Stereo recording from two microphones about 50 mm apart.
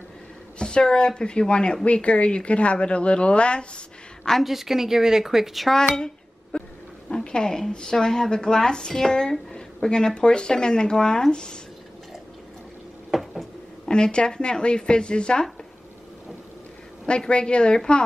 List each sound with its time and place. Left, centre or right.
0.6 s a woman's voice: centre
4.3 s a woman's voice: centre
5.8 s dishes: centre
7.1 s speech: centre
9.3 s a sound: centre
9.8 s speech: centre
13.1 s a sound: centre
13.8 s speech: centre
17.0 s a woman's voice: centre